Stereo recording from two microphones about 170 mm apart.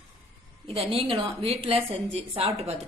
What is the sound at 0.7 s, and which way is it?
A woman's voice, 35° right (ahead or behind).